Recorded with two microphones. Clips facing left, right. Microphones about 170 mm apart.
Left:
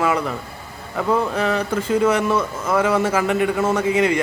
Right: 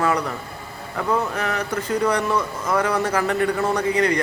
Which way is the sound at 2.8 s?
25° left (ahead or behind).